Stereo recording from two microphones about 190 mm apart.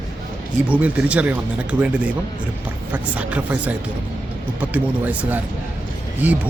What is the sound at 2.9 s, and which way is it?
Speech, 10° right (ahead or behind).